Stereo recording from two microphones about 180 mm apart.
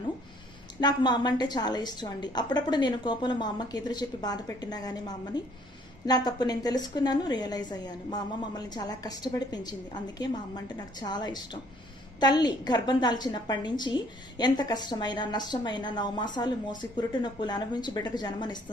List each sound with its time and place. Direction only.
0.8 s a woman's voice: 25° left (ahead or behind)